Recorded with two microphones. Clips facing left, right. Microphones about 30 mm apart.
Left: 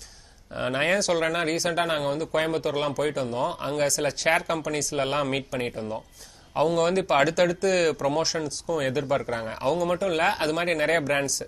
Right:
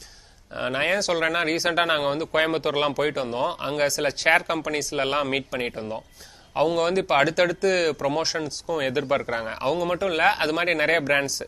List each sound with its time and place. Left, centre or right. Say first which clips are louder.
0.6 s speech: even; centre
1.6 s speech: right 3 dB; right